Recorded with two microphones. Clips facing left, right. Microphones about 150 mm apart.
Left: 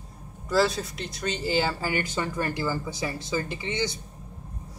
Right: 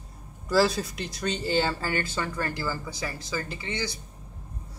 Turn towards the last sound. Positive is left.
turn(degrees=20)  # may be behind; listen again after turning